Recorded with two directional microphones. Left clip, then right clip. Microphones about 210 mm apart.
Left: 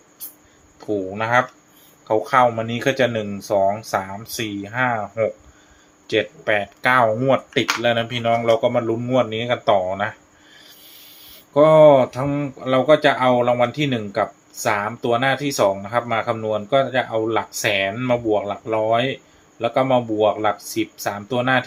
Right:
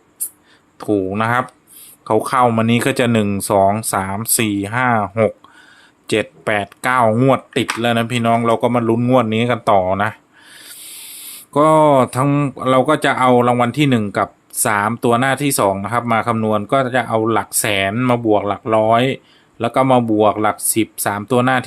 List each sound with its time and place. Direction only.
0.8 s speech: 55° right (ahead or behind)
11.5 s speech: 50° right (ahead or behind)